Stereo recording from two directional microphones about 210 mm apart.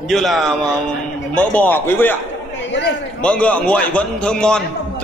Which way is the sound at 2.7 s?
60° left (ahead or behind).